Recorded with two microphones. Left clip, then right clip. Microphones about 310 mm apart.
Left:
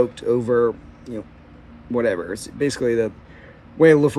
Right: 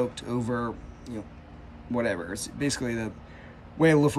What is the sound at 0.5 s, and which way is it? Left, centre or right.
Speech, right.